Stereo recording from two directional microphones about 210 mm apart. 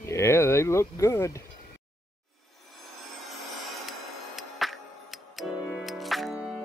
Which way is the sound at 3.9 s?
Centre (ahead or behind).